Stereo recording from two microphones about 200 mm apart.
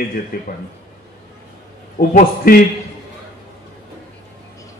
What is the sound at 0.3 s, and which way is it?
Speech, 50° left (ahead or behind).